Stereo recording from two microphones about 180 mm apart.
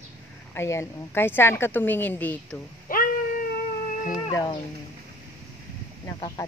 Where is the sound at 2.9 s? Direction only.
50° left (ahead or behind).